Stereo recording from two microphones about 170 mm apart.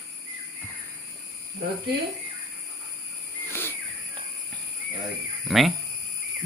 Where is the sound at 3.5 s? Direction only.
15° left (ahead or behind).